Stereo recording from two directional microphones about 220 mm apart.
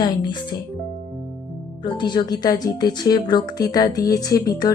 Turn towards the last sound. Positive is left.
turn(degrees=15)  # may be behind; listen again after turning